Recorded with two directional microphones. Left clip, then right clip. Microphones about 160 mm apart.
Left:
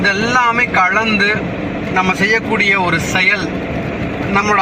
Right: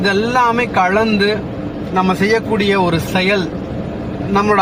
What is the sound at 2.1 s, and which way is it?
Speech, 35° right (ahead or behind).